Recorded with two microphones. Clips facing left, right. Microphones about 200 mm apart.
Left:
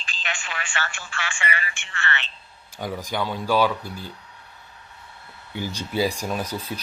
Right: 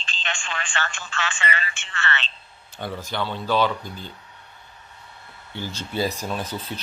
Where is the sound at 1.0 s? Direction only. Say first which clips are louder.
Right 2 dB; 15° left (ahead or behind).